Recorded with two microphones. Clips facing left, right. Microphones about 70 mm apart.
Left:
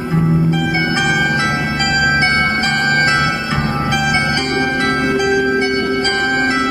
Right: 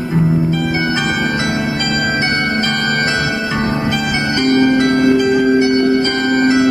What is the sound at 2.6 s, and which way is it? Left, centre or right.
Music, left.